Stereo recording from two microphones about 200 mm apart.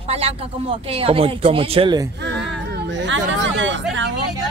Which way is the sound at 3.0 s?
65° right (ahead or behind).